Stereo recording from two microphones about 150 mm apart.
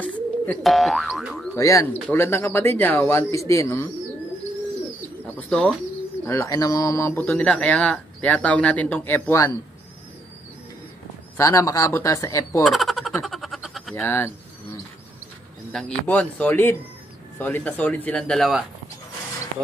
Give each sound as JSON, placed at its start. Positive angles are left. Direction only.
{"t": 0.0, "sound": "boing", "side_deg": 10}
{"t": 0.7, "sound": "boing", "side_deg": 0}
{"t": 1.5, "sound": "speech", "side_deg": 20}
{"t": 5.2, "sound": "speech", "side_deg": 5}
{"t": 6.2, "sound": "speech", "side_deg": 20}
{"t": 11.3, "sound": "speech", "side_deg": 20}
{"t": 12.6, "sound": "frog", "side_deg": 0}
{"t": 14.0, "sound": "speech", "side_deg": 15}